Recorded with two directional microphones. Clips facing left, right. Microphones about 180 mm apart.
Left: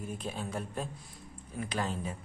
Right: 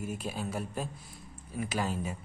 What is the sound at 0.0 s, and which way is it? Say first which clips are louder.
Speech: right 2 dB; 10° right (ahead or behind).